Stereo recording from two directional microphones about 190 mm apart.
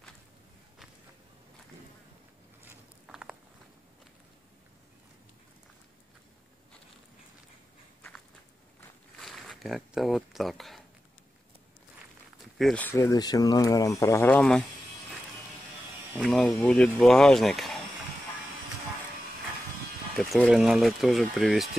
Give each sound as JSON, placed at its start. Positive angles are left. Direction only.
{"t": 2.6, "sound": "a sound", "side_deg": -5}
{"t": 9.2, "sound": "speech", "side_deg": 0}
{"t": 12.5, "sound": "speech", "side_deg": 5}
{"t": 16.2, "sound": "speech", "side_deg": 0}
{"t": 20.2, "sound": "speech", "side_deg": 0}